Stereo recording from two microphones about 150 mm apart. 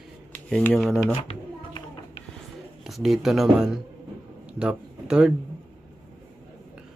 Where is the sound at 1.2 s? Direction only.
35° left (ahead or behind).